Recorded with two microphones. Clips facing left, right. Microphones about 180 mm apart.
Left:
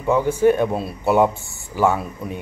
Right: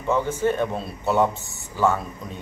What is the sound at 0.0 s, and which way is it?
Speech, 15° left (ahead or behind).